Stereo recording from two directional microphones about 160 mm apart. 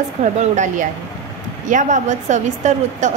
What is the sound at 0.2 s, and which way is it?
A woman's voice, 50° right (ahead or behind).